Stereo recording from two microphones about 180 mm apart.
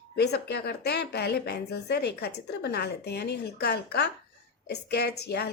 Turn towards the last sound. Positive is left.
turn(degrees=65)  # may be behind; listen again after turning